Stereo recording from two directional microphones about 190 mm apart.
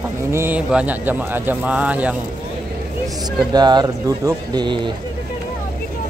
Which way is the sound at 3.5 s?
20° right (ahead or behind).